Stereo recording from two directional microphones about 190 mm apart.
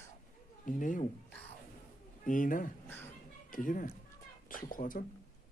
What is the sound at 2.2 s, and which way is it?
Speech, 45° left (ahead or behind).